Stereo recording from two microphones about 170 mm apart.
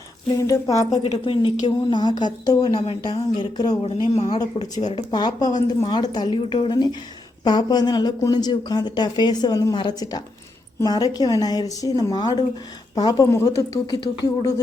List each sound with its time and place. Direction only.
0.3 s speech: 20° left (ahead or behind)
1.0 s speech: 35° left (ahead or behind)
5.1 s speech: 25° left (ahead or behind)